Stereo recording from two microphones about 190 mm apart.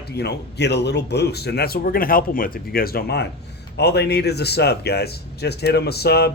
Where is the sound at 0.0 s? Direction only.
60° left (ahead or behind).